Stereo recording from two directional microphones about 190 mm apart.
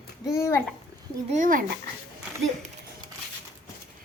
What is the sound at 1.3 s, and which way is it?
Speech, 45° right (ahead or behind).